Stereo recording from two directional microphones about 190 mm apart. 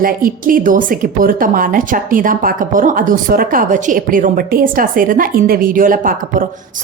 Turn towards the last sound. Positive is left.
turn(degrees=-45)  # may be behind; listen again after turning